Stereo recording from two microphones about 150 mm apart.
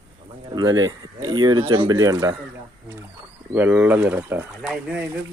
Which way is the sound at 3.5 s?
10° right (ahead or behind).